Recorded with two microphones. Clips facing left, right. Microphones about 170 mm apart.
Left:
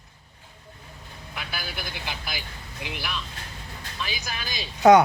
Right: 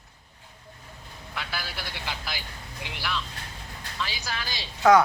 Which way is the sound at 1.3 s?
20° left (ahead or behind).